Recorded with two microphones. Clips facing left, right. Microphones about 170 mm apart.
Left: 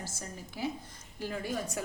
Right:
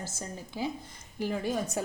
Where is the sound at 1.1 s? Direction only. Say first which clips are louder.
Right 5 dB; 20° right (ahead or behind).